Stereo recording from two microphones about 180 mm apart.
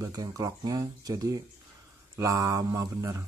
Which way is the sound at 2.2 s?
15° right (ahead or behind).